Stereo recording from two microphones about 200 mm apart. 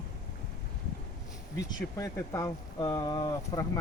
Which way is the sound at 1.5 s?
15° left (ahead or behind).